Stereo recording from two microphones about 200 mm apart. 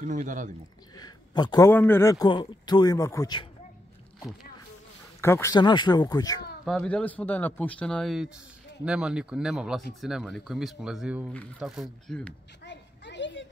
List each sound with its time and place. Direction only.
0.0 s a man's voice: 40° right (ahead or behind)
0.9 s speech: 20° left (ahead or behind)
1.7 s speech: 10° left (ahead or behind)
5.2 s speech: 15° left (ahead or behind)
6.6 s speech: 5° left (ahead or behind)
12.6 s a sound: 60° left (ahead or behind)